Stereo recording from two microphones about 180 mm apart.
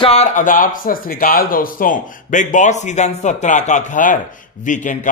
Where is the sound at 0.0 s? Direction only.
35° left (ahead or behind).